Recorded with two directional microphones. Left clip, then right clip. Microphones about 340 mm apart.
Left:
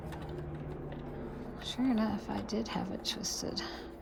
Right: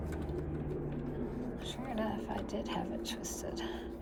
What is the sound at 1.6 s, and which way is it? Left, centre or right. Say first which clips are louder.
A woman's voice: left 6 dB; centre.